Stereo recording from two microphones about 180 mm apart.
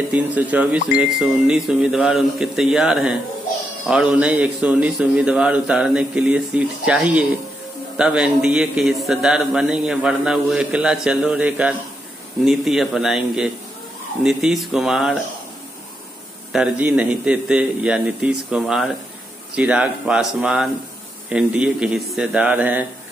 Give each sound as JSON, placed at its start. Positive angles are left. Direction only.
{"t": 0.1, "sound": "a man's voice", "side_deg": -10}
{"t": 16.5, "sound": "a man's voice", "side_deg": -5}